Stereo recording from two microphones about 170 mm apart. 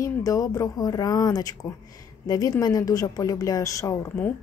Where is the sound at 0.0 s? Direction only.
20° left (ahead or behind).